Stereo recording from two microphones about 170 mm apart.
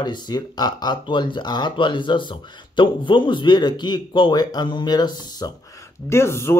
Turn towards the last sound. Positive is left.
turn(degrees=15)  # may be behind; listen again after turning